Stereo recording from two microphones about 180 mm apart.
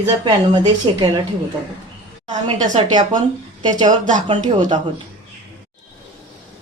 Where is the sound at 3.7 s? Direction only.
20° right (ahead or behind).